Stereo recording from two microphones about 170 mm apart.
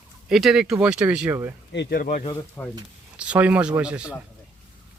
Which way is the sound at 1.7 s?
75° left (ahead or behind).